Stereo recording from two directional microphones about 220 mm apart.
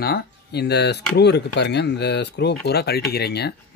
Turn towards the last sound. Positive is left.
turn(degrees=45)  # may be behind; listen again after turning